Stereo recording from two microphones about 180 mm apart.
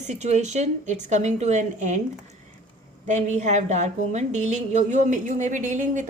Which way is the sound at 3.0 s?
40° right (ahead or behind).